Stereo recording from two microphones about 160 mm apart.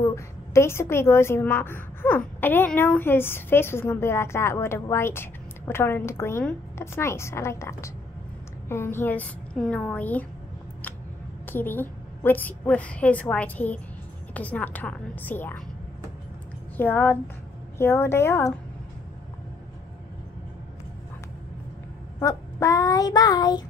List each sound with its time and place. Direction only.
0.1 s a woman's voice: 15° left (ahead or behind)
11.4 s a woman's voice: 10° left (ahead or behind)
16.7 s a woman's voice: 10° left (ahead or behind)
22.2 s child singing: 20° left (ahead or behind)